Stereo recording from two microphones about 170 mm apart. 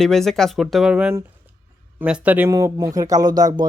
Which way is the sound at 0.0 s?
Centre (ahead or behind).